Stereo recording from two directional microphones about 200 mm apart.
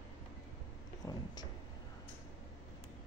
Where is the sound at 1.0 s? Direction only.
20° left (ahead or behind).